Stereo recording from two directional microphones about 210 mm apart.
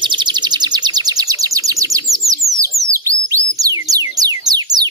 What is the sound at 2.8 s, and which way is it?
Bird, 15° right (ahead or behind).